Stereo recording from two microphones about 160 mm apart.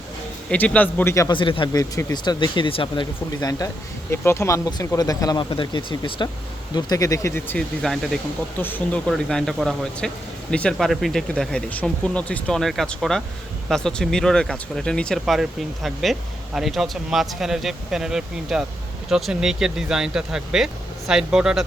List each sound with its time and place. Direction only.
0.5 s a man's voice: 10° left (ahead or behind)
1.4 s speech: 30° left (ahead or behind)
4.1 s speech: 15° left (ahead or behind)
7.8 s speech: centre (ahead or behind)